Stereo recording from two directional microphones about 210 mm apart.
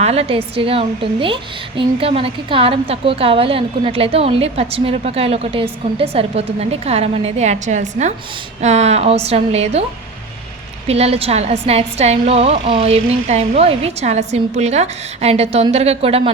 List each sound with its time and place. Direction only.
0.0 s a woman's voice: 30° right (ahead or behind)
10.8 s a woman's voice: 30° right (ahead or behind)